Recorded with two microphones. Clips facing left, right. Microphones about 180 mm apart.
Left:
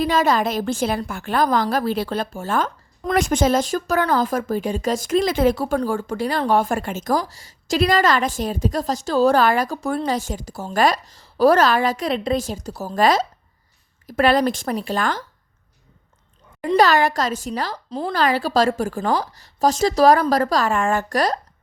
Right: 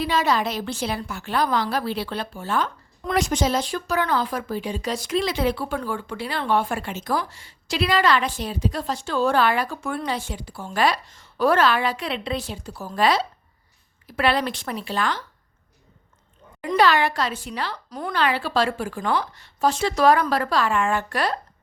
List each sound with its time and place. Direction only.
0.0 s a woman's voice: 45° left (ahead or behind)
16.6 s a woman's voice: 40° left (ahead or behind)